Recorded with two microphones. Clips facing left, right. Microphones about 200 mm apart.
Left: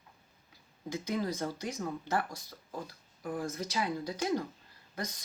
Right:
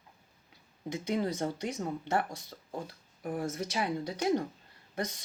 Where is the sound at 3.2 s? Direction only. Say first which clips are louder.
Right 2 dB; 25° right (ahead or behind).